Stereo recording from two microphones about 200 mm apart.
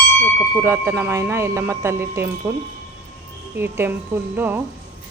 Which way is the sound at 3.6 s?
10° right (ahead or behind).